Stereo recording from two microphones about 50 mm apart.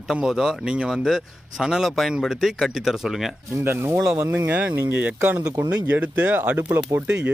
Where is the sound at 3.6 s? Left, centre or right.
Right.